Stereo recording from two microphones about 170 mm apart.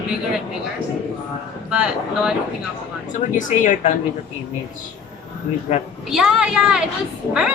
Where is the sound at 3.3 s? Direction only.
50° left (ahead or behind).